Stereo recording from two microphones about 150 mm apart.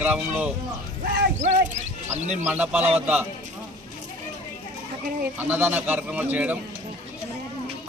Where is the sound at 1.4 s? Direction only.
55° right (ahead or behind).